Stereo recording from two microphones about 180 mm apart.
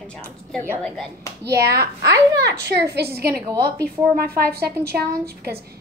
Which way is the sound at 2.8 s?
65° right (ahead or behind).